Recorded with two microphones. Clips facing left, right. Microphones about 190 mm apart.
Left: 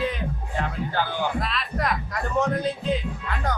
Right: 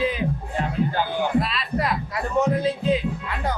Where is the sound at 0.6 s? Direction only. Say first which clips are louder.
Right 3 dB; 15° right (ahead or behind).